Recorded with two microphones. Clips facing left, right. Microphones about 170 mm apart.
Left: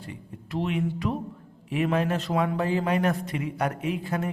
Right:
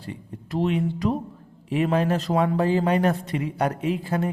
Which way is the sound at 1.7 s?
35° right (ahead or behind).